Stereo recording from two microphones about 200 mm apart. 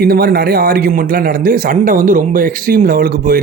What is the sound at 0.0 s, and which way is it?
A man's voice, 50° right (ahead or behind).